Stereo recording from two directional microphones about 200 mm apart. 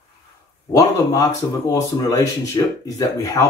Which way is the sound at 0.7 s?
15° left (ahead or behind).